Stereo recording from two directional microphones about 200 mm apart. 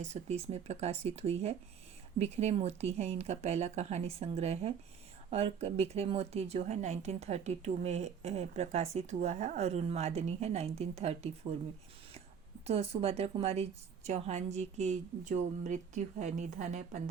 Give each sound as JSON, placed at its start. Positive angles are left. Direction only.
{"t": 0.0, "sound": "speech", "side_deg": -35}
{"t": 12.6, "sound": "speech", "side_deg": -30}